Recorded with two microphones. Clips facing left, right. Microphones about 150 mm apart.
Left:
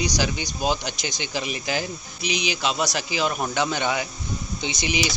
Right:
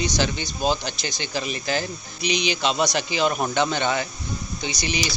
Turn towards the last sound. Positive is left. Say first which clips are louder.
# left 1 dB
turn(degrees=15)  # may be behind; listen again after turning